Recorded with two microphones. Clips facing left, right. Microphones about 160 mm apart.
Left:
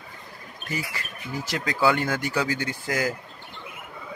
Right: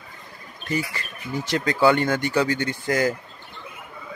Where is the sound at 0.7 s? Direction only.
5° left (ahead or behind).